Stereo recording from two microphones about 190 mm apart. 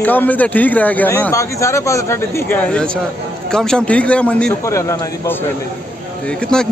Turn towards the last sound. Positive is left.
turn(degrees=5)  # may be behind; listen again after turning